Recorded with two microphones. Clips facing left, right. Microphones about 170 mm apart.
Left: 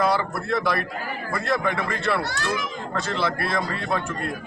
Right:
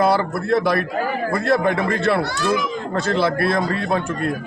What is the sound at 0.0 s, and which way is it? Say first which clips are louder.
A man's voice: right 5 dB; 35° right (ahead or behind).